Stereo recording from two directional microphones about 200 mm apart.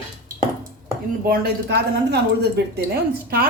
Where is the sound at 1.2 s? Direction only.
50° right (ahead or behind).